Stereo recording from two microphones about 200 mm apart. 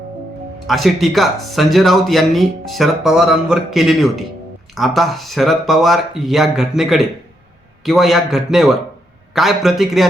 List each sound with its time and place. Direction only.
0.7 s speech: centre (ahead or behind)